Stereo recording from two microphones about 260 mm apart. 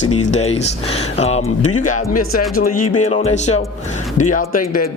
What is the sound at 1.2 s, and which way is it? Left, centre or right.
Speech, left.